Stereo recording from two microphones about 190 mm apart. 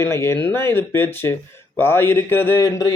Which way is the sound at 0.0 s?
15° left (ahead or behind).